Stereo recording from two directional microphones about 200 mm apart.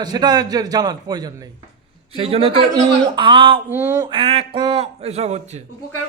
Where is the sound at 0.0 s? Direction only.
20° right (ahead or behind).